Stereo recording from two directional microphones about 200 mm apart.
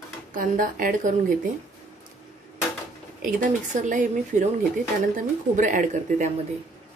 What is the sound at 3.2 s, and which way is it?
Speech, 40° right (ahead or behind).